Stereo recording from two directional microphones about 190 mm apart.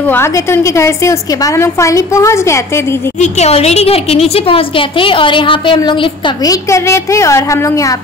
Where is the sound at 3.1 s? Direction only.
35° left (ahead or behind).